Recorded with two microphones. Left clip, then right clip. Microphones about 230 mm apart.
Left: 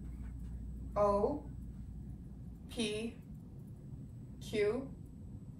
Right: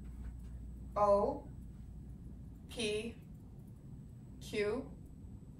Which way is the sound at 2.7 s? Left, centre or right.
Centre.